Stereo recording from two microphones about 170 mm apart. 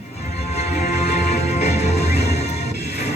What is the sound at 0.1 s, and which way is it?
Music, 40° left (ahead or behind).